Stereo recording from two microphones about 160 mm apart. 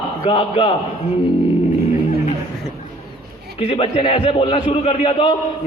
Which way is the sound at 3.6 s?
35° left (ahead or behind).